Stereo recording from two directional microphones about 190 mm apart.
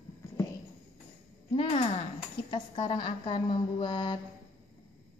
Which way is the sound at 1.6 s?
30° left (ahead or behind).